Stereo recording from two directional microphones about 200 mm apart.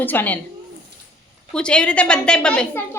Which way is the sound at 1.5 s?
5° left (ahead or behind).